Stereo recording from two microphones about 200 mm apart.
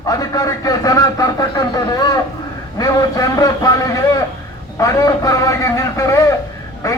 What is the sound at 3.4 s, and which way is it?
A man's voice, 15° left (ahead or behind).